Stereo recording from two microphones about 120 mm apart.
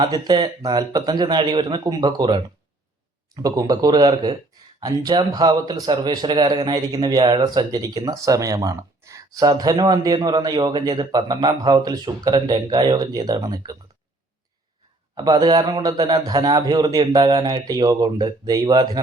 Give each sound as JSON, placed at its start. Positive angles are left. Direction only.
{"t": 0.0, "sound": "a man's voice", "side_deg": -35}
{"t": 3.4, "sound": "a man's voice", "side_deg": -30}
{"t": 15.1, "sound": "a man's voice", "side_deg": -35}